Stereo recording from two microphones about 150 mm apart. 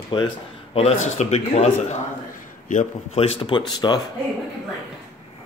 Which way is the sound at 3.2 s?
35° left (ahead or behind).